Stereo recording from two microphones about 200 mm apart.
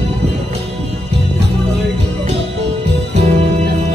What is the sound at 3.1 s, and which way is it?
Music, 35° right (ahead or behind).